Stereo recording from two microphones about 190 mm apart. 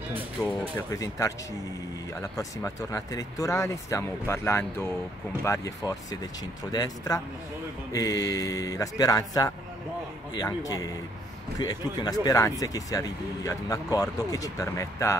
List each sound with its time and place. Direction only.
0.7 s speech: 15° left (ahead or behind)
2.3 s speech: 15° left (ahead or behind)